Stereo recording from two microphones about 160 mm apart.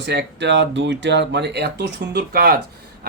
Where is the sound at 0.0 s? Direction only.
90° right.